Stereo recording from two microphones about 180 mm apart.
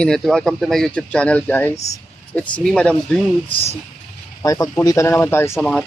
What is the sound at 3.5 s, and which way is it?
Speech, 30° left (ahead or behind).